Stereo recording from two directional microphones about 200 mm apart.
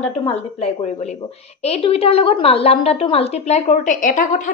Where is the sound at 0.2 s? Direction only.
30° left (ahead or behind).